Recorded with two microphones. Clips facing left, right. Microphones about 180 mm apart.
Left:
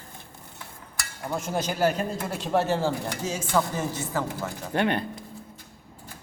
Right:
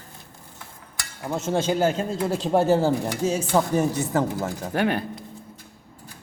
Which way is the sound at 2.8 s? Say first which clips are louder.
Right 5 dB; 35° right (ahead or behind).